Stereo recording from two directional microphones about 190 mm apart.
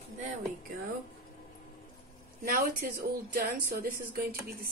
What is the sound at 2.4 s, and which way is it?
Speech, 50° right (ahead or behind).